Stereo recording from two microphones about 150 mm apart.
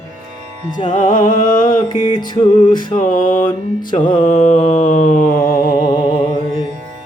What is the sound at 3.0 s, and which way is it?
Music, 65° left (ahead or behind).